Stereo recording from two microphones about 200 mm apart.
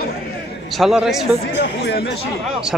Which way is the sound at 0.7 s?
Centre (ahead or behind).